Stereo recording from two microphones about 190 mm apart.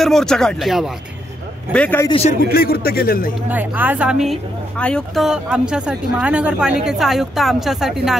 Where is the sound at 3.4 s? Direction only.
10° right (ahead or behind).